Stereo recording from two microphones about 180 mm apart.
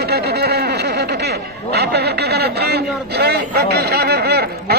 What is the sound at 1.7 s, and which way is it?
A man's voice, 65° right (ahead or behind).